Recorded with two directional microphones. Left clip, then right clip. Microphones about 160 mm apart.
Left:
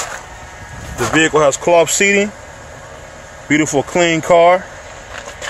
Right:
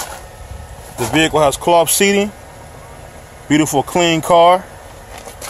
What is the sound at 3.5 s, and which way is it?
A man's voice, 10° right (ahead or behind).